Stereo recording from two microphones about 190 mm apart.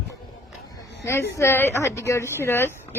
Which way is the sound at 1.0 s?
15° left (ahead or behind).